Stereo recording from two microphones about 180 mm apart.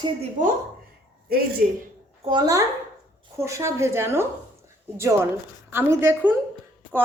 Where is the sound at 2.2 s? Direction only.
25° right (ahead or behind).